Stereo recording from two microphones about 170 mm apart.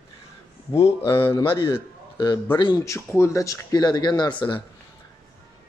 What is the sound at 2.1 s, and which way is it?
Speech, 25° left (ahead or behind).